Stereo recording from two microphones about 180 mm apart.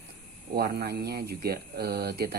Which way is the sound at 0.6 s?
65° right (ahead or behind).